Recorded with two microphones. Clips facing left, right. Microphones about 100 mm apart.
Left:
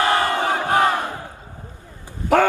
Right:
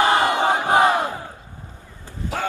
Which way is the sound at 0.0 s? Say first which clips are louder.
Right 2 dB; 20° right (ahead or behind).